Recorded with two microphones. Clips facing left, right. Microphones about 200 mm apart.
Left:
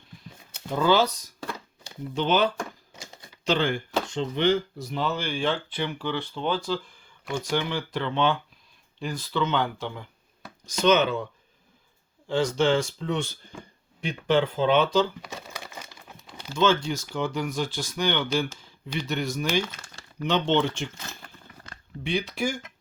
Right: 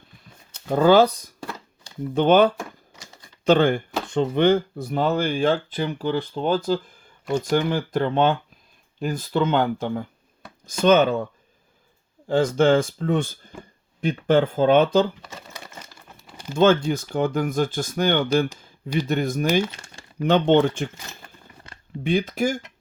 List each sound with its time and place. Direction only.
0.7 s speech: 50° right (ahead or behind)
12.3 s speech: 55° right (ahead or behind)
15.4 s crumpling: centre (ahead or behind)
16.6 s speech: 55° right (ahead or behind)
19.8 s crumpling: 15° right (ahead or behind)
20.2 s speech: 50° right (ahead or behind)
22.0 s speech: 50° right (ahead or behind)